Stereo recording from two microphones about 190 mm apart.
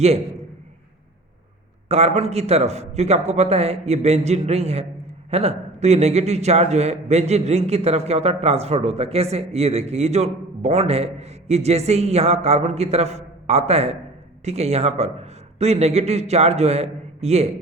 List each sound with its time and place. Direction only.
1.9 s a man's voice: 35° right (ahead or behind)